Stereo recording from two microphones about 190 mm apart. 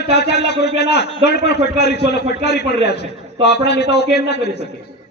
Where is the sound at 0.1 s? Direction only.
60° left (ahead or behind).